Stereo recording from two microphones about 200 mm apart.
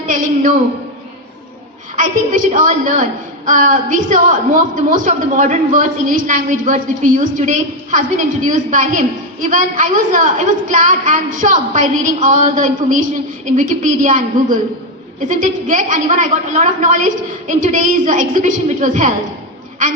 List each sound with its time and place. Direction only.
2.0 s a woman's voice: 40° right (ahead or behind)